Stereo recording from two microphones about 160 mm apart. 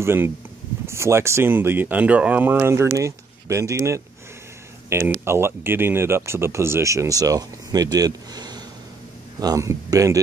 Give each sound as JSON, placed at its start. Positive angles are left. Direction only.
{"t": 0.0, "sound": "speech", "side_deg": -15}